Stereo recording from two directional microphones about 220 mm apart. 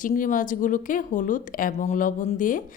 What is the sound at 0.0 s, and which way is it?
Speech, 35° left (ahead or behind).